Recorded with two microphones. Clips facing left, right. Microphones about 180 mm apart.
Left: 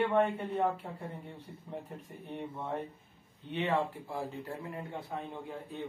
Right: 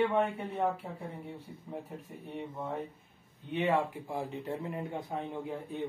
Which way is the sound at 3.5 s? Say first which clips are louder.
Right 2 dB; 10° right (ahead or behind).